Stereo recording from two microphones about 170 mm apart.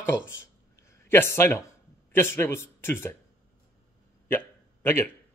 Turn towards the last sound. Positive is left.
turn(degrees=15)  # may be behind; listen again after turning